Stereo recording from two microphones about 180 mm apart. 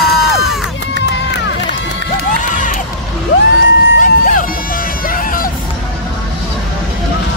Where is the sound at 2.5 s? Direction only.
45° left (ahead or behind).